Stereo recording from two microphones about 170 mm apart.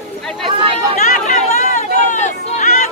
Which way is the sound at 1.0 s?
50° left (ahead or behind).